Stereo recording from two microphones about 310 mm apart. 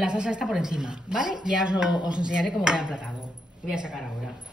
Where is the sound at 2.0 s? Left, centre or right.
Centre.